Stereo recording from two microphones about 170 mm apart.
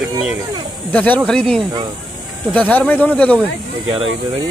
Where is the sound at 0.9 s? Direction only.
10° left (ahead or behind).